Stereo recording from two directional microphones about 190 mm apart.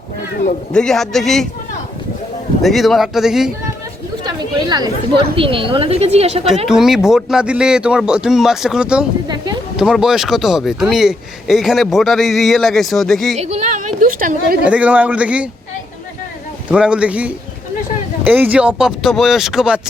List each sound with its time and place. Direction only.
0.7 s speech: 5° left (ahead or behind)
2.6 s speech: centre (ahead or behind)
4.2 s a sound: 20° right (ahead or behind)
5.4 s a woman's voice: 25° right (ahead or behind)
6.7 s speech: centre (ahead or behind)
9.2 s a sound: 20° right (ahead or behind)
9.7 s speech: 5° right (ahead or behind)
13.4 s a woman's voice: 35° right (ahead or behind)
14.6 s a man's voice: 5° right (ahead or behind)
16.6 s speech: 5° right (ahead or behind)